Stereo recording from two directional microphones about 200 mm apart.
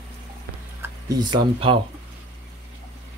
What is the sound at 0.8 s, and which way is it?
Speech, 20° right (ahead or behind).